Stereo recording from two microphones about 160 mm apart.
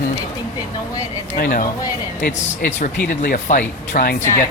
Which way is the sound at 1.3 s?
60° left (ahead or behind).